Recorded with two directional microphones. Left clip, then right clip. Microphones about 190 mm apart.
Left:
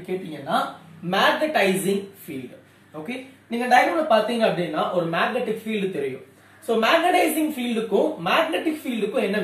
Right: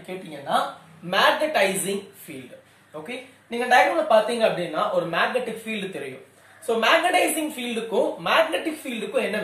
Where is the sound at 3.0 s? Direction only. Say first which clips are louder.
Left 2 dB; 25° right (ahead or behind).